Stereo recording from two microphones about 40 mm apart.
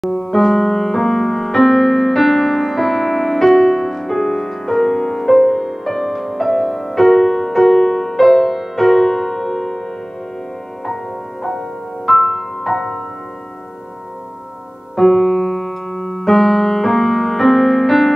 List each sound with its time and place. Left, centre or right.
0.0 s music: centre
12.1 s music: centre
15.0 s keyboard: centre